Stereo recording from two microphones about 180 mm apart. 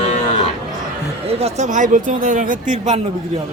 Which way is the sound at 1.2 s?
35° right (ahead or behind).